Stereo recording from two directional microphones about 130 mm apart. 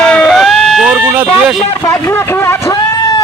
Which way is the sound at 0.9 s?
15° right (ahead or behind).